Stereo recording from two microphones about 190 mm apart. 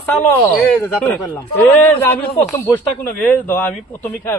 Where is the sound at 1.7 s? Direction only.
10° left (ahead or behind).